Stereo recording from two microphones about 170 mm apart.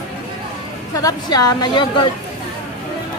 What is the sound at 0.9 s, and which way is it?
Speech, 20° left (ahead or behind).